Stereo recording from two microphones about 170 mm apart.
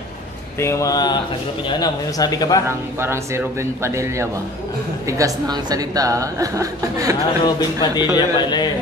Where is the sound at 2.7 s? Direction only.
15° right (ahead or behind).